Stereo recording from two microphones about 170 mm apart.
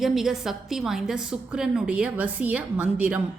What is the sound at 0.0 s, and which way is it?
A woman's voice, centre (ahead or behind).